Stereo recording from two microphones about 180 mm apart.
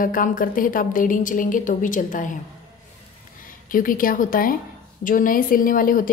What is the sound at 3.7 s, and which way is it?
A woman's voice, 50° left (ahead or behind).